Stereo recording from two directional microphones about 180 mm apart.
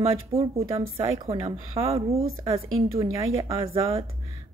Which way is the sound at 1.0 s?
20° right (ahead or behind).